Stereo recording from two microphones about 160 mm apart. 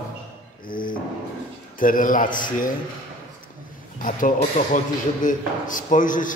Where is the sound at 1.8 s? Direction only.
60° left (ahead or behind).